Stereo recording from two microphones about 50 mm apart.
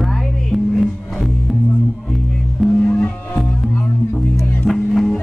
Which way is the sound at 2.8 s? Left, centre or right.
Left.